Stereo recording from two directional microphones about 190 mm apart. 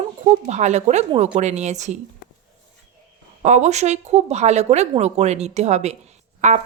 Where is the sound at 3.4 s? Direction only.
40° right (ahead or behind).